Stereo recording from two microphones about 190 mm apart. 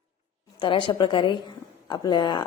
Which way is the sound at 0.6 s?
25° left (ahead or behind).